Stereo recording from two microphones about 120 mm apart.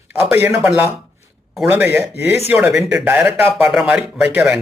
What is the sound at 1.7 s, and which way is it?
Speech, 15° right (ahead or behind).